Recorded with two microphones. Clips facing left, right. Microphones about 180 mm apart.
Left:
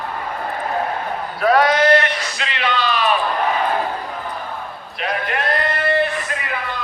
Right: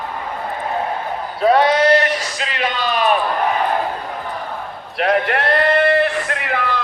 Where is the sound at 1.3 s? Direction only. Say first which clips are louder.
Right 2 dB; 25° right (ahead or behind); by 3.1 s 45° right (ahead or behind).